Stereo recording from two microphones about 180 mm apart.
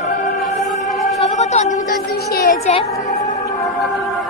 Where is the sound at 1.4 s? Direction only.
40° left (ahead or behind).